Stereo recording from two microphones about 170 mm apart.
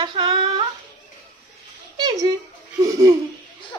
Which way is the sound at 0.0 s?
30° right (ahead or behind).